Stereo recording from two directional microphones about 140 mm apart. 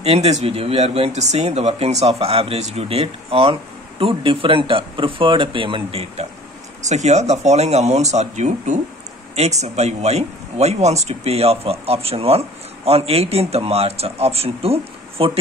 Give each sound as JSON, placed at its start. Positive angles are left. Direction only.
{"t": 0.0, "sound": "speech", "side_deg": -45}
{"t": 6.8, "sound": "speech", "side_deg": -55}